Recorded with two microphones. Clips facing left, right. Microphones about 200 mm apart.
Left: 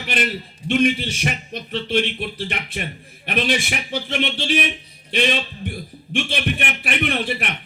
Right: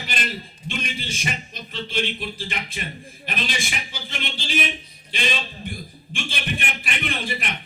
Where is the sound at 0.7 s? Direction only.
65° left (ahead or behind).